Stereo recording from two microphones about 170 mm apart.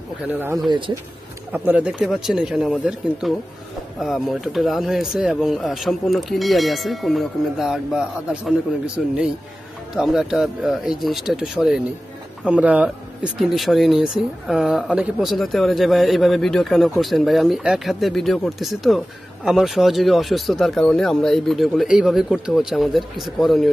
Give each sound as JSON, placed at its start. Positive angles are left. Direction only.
{"t": 0.3, "sound": "speech", "side_deg": -10}
{"t": 0.7, "sound": "speech", "side_deg": -30}
{"t": 1.5, "sound": "speech", "side_deg": -10}